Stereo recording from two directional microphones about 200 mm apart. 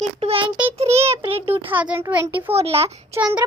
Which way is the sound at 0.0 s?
30° right (ahead or behind).